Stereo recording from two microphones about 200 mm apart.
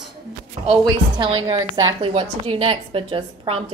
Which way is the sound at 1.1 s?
25° right (ahead or behind).